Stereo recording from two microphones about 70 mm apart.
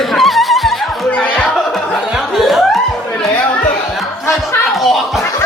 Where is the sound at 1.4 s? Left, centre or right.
Centre.